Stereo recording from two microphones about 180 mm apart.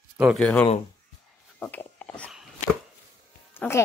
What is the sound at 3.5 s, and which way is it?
Speech, 10° left (ahead or behind).